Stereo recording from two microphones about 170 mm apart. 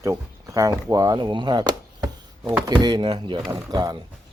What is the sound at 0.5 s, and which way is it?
Speech, 20° right (ahead or behind).